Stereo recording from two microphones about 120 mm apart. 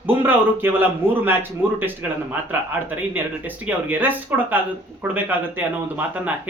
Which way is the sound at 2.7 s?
15° right (ahead or behind).